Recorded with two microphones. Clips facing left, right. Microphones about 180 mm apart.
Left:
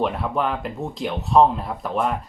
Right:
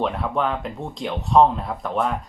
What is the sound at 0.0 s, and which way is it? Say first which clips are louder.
Speech: even; centre (ahead or behind).